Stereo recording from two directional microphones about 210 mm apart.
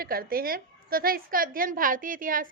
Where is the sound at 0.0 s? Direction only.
45° right (ahead or behind).